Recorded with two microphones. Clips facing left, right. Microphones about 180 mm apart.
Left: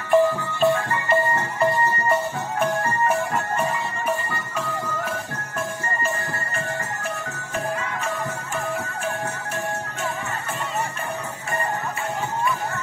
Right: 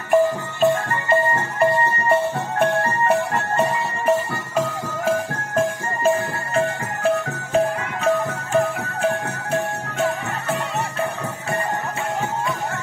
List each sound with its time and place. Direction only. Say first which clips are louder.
0.1 s music: right 1 dB; 20° right (ahead or behind)
2.6 s music: right 3 dB; 65° right (ahead or behind); by 6.6 s 90° right
8.5 s music: right 10 dB; 60° right (ahead or behind)